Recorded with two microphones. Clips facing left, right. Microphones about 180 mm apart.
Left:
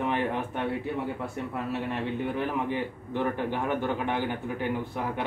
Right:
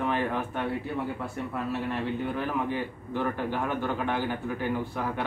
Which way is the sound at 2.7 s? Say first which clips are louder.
Left 1 dB; 20° left (ahead or behind).